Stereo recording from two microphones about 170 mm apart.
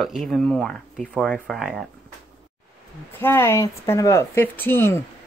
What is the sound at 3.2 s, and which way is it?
Speech, 15° left (ahead or behind).